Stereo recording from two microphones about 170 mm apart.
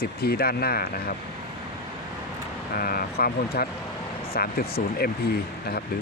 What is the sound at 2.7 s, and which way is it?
Speech, 60° left (ahead or behind).